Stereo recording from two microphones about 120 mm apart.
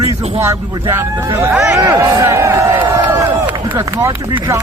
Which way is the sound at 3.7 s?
20° right (ahead or behind).